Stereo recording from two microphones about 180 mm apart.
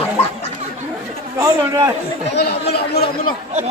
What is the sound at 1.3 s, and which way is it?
Speech, 20° right (ahead or behind).